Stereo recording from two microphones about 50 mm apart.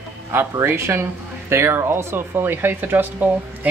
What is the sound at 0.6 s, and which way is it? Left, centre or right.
Speech, right.